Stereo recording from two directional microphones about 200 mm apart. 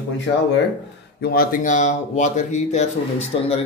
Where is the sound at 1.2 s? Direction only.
50° left (ahead or behind).